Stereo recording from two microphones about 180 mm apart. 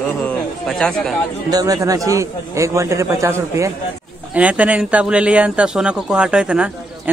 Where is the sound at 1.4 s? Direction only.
20° right (ahead or behind).